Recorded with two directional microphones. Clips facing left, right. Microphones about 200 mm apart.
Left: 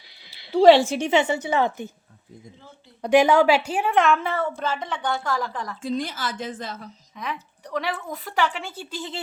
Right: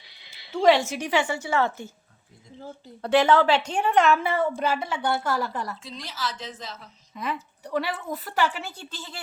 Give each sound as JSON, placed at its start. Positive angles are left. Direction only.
{"t": 0.3, "sound": "speech", "side_deg": 35}
{"t": 3.0, "sound": "a woman's voice", "side_deg": 15}
{"t": 5.8, "sound": "a woman's voice", "side_deg": 50}
{"t": 7.2, "sound": "a woman's voice", "side_deg": -5}